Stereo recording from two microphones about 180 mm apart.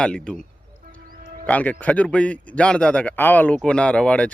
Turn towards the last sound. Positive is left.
turn(degrees=5)  # may be behind; listen again after turning